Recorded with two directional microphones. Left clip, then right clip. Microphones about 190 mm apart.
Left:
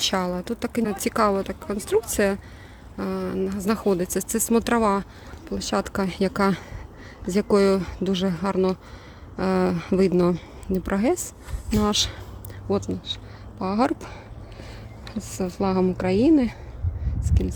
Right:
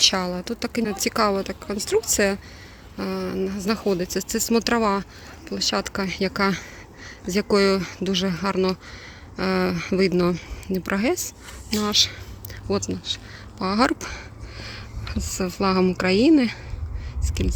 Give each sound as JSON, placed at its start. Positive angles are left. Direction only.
{"t": 0.0, "sound": "speech", "side_deg": 5}
{"t": 12.6, "sound": "a woman's voice", "side_deg": 0}